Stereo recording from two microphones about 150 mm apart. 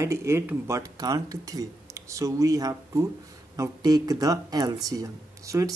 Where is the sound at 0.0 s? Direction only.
20° right (ahead or behind).